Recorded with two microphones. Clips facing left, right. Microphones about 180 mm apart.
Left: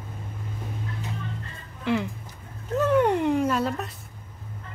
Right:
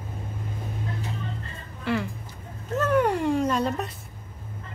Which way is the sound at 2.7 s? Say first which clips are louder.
Left 2 dB; 20° left (ahead or behind).